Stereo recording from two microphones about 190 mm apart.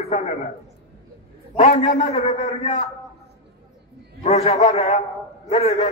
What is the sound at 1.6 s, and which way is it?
A man's voice, 35° left (ahead or behind).